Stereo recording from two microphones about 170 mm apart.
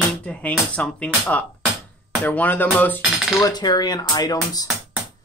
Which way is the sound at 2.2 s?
10° left (ahead or behind).